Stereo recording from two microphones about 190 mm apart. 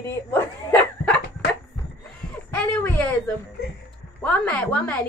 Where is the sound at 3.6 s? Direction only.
55° left (ahead or behind).